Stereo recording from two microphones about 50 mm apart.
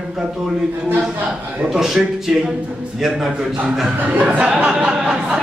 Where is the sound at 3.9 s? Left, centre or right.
Right.